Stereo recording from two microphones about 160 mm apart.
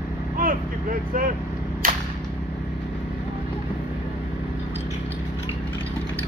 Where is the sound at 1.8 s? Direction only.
60° right (ahead or behind).